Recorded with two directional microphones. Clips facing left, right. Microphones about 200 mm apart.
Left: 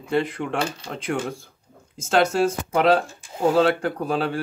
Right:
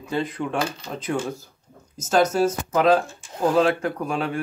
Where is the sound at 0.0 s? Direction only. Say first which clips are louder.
Left 2 dB; 30° left (ahead or behind).